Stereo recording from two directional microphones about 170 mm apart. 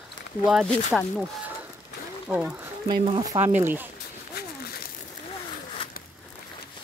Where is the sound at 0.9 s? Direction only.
Centre (ahead or behind).